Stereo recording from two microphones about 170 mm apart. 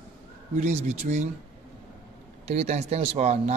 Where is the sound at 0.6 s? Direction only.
45° right (ahead or behind).